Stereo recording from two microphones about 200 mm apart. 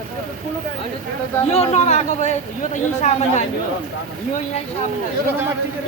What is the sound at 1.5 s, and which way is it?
Speech, 35° left (ahead or behind).